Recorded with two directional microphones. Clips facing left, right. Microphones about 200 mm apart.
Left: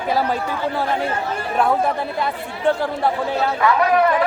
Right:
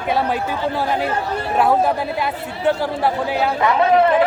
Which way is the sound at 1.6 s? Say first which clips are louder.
Right 2 dB; 5° right (ahead or behind).